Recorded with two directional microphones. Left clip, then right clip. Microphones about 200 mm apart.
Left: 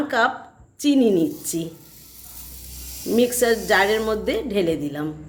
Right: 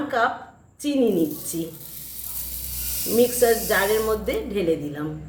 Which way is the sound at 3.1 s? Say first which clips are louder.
Even; 55° left (ahead or behind).